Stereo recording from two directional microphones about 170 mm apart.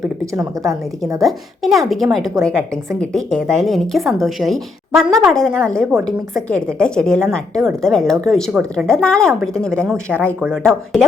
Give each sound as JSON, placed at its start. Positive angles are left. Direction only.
{"t": 0.3, "sound": "a woman's voice", "side_deg": -20}
{"t": 1.2, "sound": "a woman's voice", "side_deg": 0}
{"t": 9.8, "sound": "speech", "side_deg": -15}
{"t": 10.4, "sound": "a woman's voice", "side_deg": 5}